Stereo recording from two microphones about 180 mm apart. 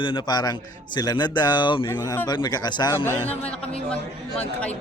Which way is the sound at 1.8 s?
15° left (ahead or behind).